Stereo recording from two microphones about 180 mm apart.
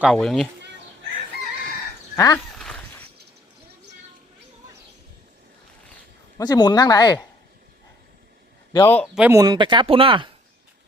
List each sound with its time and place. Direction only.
0.0 s speech: centre (ahead or behind)
2.1 s speech: 20° left (ahead or behind)
2.6 s a sound: 5° left (ahead or behind)
6.3 s speech: 20° left (ahead or behind)
8.8 s speech: 10° left (ahead or behind)
9.1 s speech: 10° right (ahead or behind)
9.4 s speech: 25° right (ahead or behind)